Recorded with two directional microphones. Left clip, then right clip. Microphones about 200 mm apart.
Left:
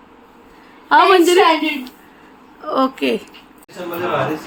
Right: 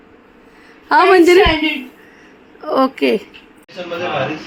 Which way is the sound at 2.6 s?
10° right (ahead or behind).